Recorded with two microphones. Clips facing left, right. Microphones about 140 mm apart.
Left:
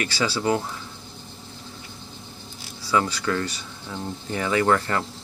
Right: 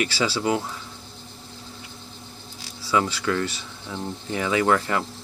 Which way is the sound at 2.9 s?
5° right (ahead or behind).